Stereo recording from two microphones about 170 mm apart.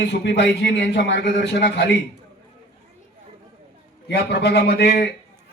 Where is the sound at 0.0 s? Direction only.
85° left.